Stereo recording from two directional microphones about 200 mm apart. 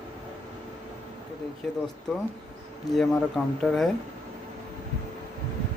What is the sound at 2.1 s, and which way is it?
Speech, centre (ahead or behind).